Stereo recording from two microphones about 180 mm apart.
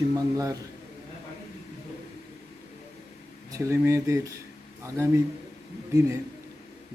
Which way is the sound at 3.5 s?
15° right (ahead or behind).